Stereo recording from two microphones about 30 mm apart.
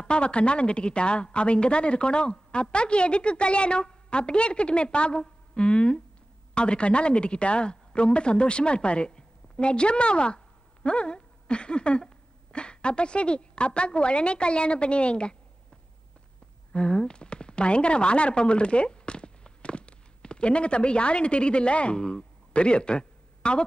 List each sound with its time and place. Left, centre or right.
0.0 s a woman's voice: left
16.7 s speech: left
22.1 s a sound: left